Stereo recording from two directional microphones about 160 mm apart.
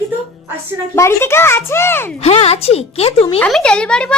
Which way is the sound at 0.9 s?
15° left (ahead or behind).